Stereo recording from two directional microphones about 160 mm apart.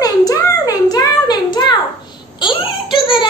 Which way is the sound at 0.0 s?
25° left (ahead or behind).